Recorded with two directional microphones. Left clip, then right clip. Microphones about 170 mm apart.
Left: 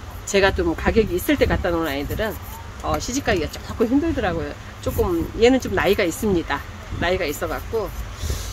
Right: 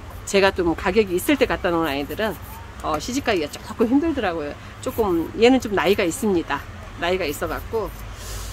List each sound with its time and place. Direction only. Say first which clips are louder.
0.3 s speech: even; 15° right (ahead or behind)